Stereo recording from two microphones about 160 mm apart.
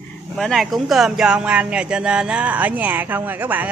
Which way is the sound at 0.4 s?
Centre (ahead or behind).